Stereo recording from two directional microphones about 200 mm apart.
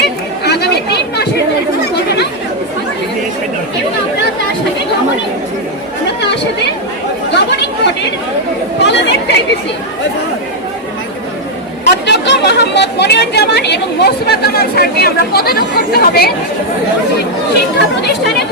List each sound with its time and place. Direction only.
0.0 s chatter: 55° left (ahead or behind)
7.3 s chatter: 60° left (ahead or behind)
8.8 s chatter: 60° left (ahead or behind)
12.0 s chatter: 60° left (ahead or behind)